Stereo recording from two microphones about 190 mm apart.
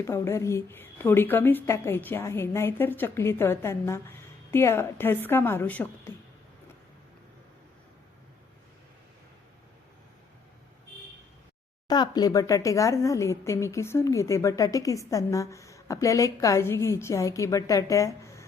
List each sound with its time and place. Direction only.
0.0 s a woman's voice: 15° left (ahead or behind)
11.9 s a woman's voice: 20° left (ahead or behind)